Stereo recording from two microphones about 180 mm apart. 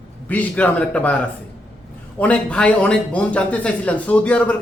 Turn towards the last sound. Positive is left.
turn(degrees=5)  # may be behind; listen again after turning